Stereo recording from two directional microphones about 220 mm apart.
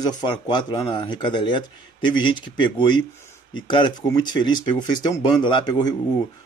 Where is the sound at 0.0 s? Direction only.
20° left (ahead or behind).